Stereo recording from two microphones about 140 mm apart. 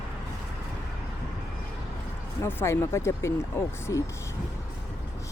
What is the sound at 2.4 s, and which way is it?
Speech, 20° left (ahead or behind).